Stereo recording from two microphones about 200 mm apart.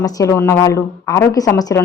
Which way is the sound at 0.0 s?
15° left (ahead or behind).